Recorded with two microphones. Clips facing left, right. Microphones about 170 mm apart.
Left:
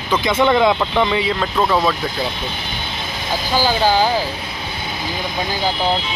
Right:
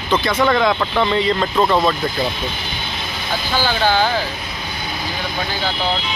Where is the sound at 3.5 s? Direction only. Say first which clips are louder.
Left 2 dB; 10° left (ahead or behind).